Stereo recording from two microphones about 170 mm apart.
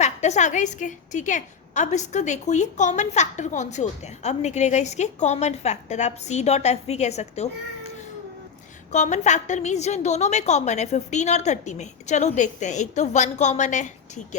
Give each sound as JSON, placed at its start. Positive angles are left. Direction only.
{"t": 0.0, "sound": "a woman's voice", "side_deg": 40}
{"t": 8.9, "sound": "a woman's voice", "side_deg": 45}